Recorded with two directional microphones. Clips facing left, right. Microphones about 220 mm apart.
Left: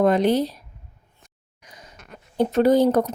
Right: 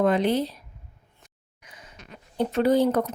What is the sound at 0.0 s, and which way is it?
Speech, 40° left (ahead or behind).